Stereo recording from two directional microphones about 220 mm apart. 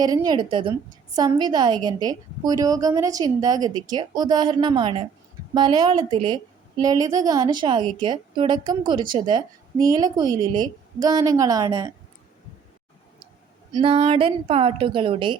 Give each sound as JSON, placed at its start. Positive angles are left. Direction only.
{"t": 0.0, "sound": "a woman's voice", "side_deg": -15}
{"t": 13.7, "sound": "a woman's voice", "side_deg": -25}